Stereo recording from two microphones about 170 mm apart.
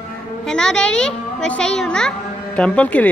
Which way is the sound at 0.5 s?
5° left (ahead or behind).